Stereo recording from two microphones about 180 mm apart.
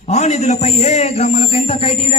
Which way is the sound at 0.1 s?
40° left (ahead or behind).